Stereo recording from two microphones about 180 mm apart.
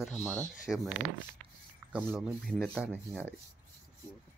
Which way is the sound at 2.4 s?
Centre (ahead or behind).